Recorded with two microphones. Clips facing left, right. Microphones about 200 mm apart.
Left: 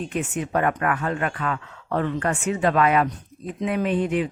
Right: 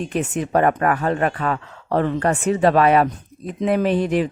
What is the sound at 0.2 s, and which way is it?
Speech, 40° right (ahead or behind).